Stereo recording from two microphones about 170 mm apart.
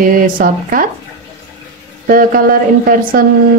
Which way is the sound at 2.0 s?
55° right (ahead or behind).